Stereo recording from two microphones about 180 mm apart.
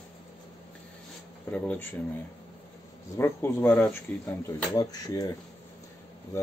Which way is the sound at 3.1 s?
15° left (ahead or behind).